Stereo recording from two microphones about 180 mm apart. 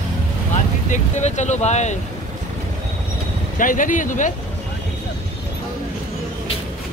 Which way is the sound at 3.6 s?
45° left (ahead or behind).